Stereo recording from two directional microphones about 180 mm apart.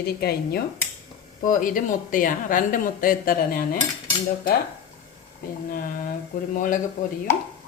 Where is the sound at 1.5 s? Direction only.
50° left (ahead or behind).